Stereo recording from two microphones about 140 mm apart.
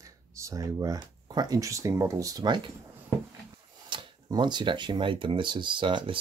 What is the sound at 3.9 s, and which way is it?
Speech, 35° right (ahead or behind).